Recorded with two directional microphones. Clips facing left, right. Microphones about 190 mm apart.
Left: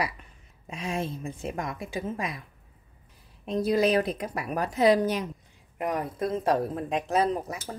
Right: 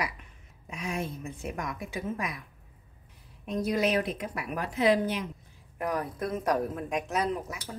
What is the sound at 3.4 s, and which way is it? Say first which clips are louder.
Speech: left 4 dB; 30° left (ahead or behind).